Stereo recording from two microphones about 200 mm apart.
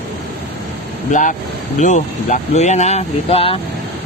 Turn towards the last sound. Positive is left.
turn(degrees=30)  # may be behind; listen again after turning